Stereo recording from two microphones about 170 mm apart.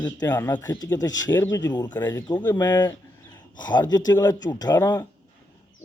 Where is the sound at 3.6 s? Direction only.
25° left (ahead or behind).